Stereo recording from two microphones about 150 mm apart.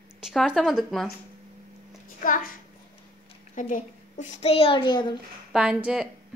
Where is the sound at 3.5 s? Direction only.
60° left (ahead or behind); by 5.1 s 30° left (ahead or behind).